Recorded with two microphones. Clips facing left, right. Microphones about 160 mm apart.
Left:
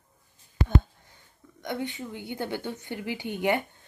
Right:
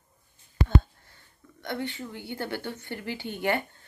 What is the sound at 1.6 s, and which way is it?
A woman's voice, 15° left (ahead or behind).